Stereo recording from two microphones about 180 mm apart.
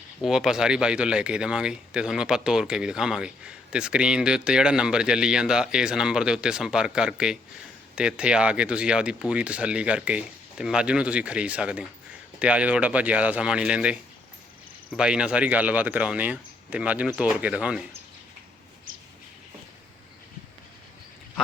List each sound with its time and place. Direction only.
0.2 s speech: centre (ahead or behind)